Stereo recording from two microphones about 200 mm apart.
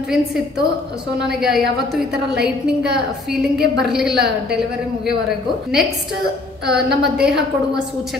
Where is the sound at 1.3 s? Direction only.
Centre (ahead or behind).